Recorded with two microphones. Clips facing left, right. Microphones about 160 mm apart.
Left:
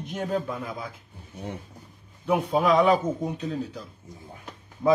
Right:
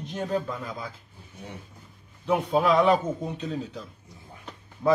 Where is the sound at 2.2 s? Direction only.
Centre (ahead or behind).